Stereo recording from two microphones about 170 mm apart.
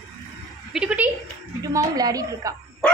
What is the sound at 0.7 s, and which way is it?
Speech, 5° right (ahead or behind).